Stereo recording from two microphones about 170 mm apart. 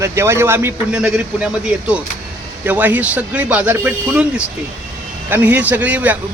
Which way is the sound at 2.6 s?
10° right (ahead or behind).